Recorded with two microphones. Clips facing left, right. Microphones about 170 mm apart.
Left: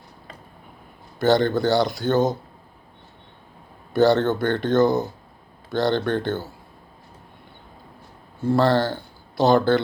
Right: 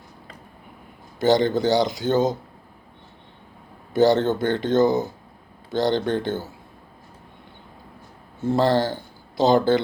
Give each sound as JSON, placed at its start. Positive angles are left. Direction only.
{"t": 1.2, "sound": "speech", "side_deg": -15}
{"t": 3.9, "sound": "speech", "side_deg": -20}
{"t": 8.4, "sound": "speech", "side_deg": -20}